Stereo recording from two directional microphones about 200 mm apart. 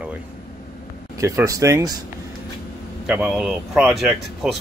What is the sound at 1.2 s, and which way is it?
Speech, 15° right (ahead or behind).